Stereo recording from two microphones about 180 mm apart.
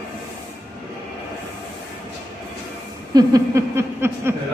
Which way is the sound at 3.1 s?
20° right (ahead or behind).